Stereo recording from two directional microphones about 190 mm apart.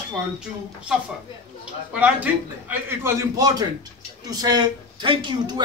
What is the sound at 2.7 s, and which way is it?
A man's voice, 10° right (ahead or behind).